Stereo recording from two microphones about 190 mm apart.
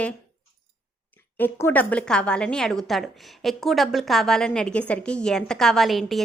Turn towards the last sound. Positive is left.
turn(degrees=0)  # may be behind; listen again after turning